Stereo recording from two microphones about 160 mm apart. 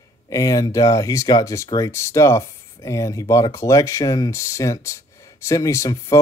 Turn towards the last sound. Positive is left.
turn(degrees=20)  # may be behind; listen again after turning